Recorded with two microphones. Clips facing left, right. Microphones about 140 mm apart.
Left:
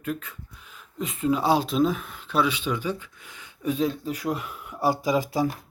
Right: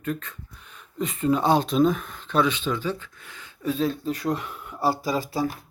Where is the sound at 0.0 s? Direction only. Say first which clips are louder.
Right 1 dB; 5° left (ahead or behind).